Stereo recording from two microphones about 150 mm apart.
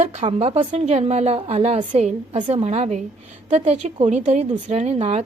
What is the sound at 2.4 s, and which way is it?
A woman's voice, 35° right (ahead or behind).